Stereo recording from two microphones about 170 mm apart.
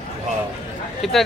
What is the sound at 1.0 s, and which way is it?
Speech, centre (ahead or behind).